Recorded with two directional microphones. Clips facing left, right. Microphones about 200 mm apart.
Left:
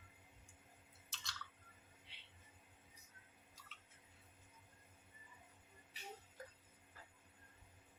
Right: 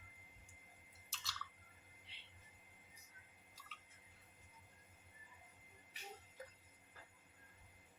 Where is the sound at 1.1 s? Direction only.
Centre (ahead or behind).